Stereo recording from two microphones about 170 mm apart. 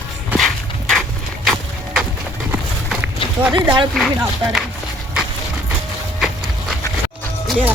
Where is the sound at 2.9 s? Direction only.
10° right (ahead or behind).